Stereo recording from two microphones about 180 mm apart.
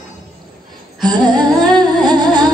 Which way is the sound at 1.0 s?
25° right (ahead or behind).